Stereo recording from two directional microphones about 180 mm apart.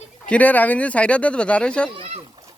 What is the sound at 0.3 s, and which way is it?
Speech, 10° left (ahead or behind).